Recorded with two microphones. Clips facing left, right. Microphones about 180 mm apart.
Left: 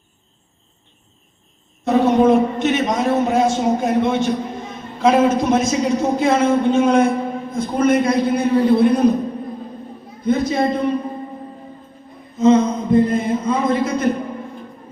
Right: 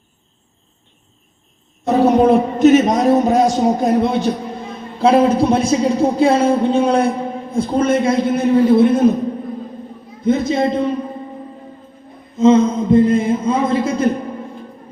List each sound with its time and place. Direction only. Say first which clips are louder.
1.8 s a man's voice: right 2 dB; 35° right (ahead or behind)
10.2 s a man's voice: right 2 dB; 25° right (ahead or behind)
12.4 s a man's voice: right 2 dB; 25° right (ahead or behind)